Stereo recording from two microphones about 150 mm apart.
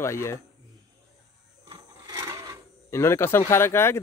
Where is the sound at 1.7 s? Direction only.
25° right (ahead or behind).